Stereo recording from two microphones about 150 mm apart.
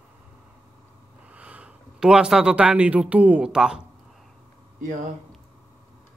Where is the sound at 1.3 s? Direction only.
10° right (ahead or behind).